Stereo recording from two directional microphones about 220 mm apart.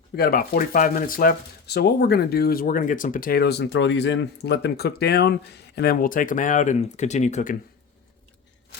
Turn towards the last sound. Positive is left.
turn(degrees=35)  # may be behind; listen again after turning